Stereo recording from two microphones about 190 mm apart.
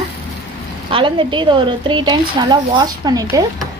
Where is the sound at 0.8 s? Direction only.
25° right (ahead or behind).